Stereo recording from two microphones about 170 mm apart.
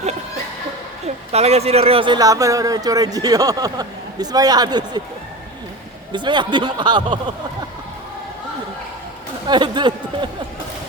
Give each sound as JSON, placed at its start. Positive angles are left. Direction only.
{"t": 1.0, "sound": "speech", "side_deg": -40}
{"t": 6.1, "sound": "speech", "side_deg": -25}
{"t": 9.5, "sound": "speech", "side_deg": -25}